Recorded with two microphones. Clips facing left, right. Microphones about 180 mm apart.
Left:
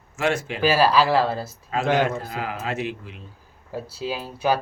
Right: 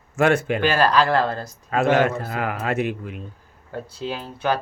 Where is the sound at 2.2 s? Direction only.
60° right (ahead or behind).